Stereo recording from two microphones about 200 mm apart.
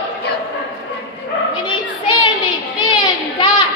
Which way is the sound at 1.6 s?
25° left (ahead or behind).